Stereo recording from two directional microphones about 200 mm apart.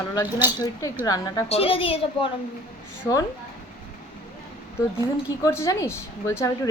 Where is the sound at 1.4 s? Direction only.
30° left (ahead or behind).